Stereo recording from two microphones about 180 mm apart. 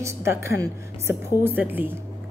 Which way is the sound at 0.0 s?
15° right (ahead or behind).